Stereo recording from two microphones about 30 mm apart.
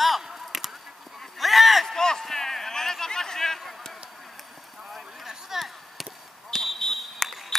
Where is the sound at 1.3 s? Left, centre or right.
Centre.